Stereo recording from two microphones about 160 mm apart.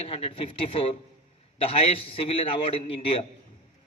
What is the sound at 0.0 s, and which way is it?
A man's voice, 40° left (ahead or behind).